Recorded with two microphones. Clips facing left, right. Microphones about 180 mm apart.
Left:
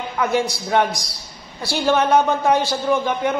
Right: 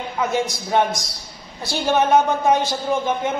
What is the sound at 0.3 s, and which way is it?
A woman's voice, 20° right (ahead or behind).